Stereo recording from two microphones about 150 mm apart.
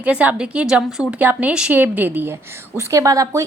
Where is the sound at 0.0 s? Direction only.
10° right (ahead or behind).